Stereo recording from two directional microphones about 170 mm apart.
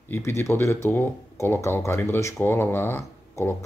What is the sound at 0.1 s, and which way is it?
Speech, 15° left (ahead or behind).